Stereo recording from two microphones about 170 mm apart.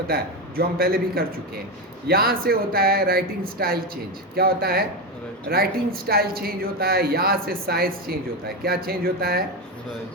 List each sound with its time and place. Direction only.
0.1 s a woman's voice: 60° right (ahead or behind)